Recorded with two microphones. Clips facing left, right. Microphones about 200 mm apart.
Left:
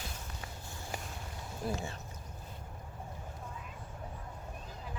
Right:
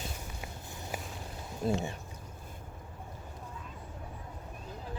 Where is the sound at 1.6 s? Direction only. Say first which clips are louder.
Right 6 dB; 20° right (ahead or behind).